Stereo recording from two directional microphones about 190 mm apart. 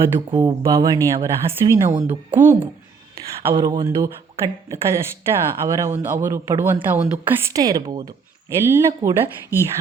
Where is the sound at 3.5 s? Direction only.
25° right (ahead or behind).